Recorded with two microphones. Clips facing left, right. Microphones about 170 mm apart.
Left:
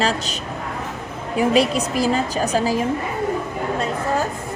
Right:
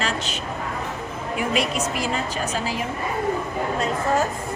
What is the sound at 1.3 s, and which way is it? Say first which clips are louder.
A woman's voice: left 7 dB; 35° left (ahead or behind).